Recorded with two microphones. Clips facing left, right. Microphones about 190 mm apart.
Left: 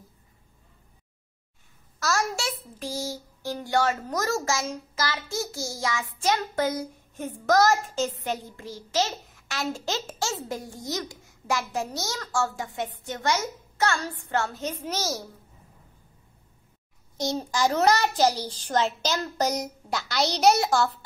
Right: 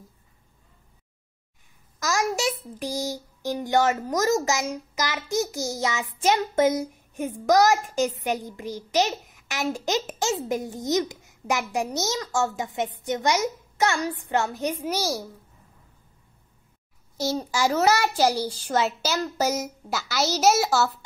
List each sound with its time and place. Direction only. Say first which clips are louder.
2.0 s a child's voice: right 2 dB; 15° right (ahead or behind)
17.5 s a child's voice: even; 5° right (ahead or behind)